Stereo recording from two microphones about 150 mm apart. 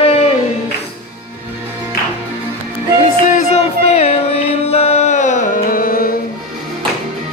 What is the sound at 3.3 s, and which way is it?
Music, 45° left (ahead or behind).